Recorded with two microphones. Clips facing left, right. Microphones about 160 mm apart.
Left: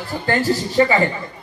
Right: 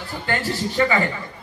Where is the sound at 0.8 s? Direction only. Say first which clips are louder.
Left 4 dB; 25° left (ahead or behind).